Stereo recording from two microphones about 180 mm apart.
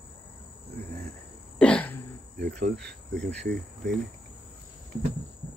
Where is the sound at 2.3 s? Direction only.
60° right (ahead or behind).